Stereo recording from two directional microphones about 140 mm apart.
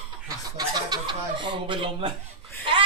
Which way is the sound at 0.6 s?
30° right (ahead or behind).